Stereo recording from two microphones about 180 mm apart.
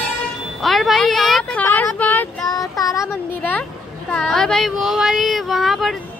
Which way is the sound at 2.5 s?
20° left (ahead or behind).